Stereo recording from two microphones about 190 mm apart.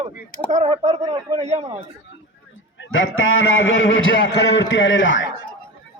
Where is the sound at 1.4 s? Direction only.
35° right (ahead or behind).